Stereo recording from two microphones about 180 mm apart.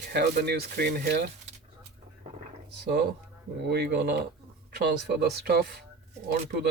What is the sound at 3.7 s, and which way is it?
Speech, 65° right (ahead or behind).